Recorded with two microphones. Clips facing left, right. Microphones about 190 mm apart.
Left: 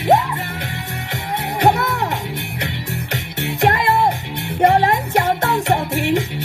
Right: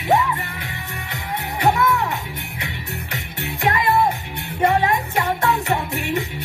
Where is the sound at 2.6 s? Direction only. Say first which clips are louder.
Left 5 dB; 80° left.